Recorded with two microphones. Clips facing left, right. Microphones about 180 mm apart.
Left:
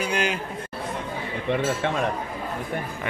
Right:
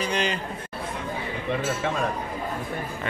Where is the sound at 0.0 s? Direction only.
10° left (ahead or behind).